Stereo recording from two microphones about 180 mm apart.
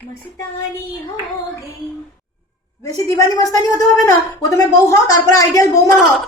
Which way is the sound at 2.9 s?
20° left (ahead or behind).